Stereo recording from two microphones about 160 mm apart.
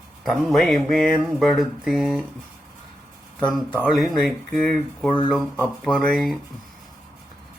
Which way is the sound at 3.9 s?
Centre (ahead or behind).